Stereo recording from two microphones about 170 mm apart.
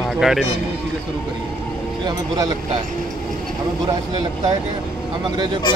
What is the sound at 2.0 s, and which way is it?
Speech, 25° right (ahead or behind).